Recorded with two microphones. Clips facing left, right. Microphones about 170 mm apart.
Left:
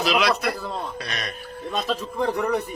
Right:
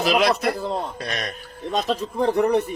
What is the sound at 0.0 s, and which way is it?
Speech, 45° right (ahead or behind).